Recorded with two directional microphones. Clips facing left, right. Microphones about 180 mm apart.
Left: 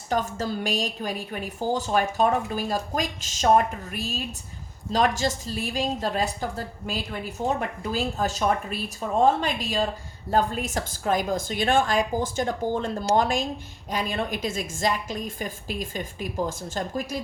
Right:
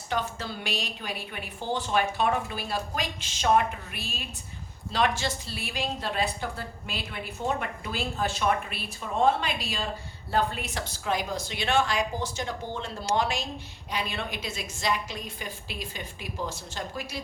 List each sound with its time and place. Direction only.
0.1 s a woman's voice: 45° left (ahead or behind)